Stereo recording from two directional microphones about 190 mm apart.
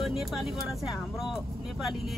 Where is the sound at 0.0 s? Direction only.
Centre (ahead or behind).